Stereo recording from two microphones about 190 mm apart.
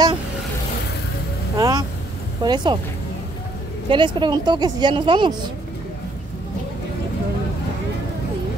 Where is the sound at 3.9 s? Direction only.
25° right (ahead or behind).